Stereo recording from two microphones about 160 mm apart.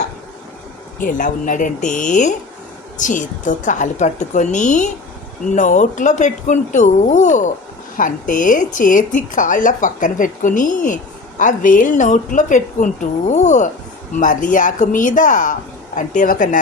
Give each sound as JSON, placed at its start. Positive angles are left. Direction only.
{"t": 1.0, "sound": "a woman's voice", "side_deg": 55}